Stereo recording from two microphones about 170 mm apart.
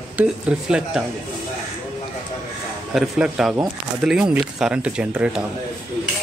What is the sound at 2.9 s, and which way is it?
Speech, 5° right (ahead or behind).